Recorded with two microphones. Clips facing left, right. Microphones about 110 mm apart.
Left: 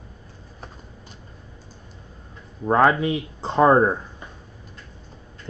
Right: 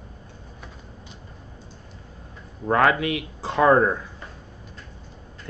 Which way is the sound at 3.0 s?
90° right.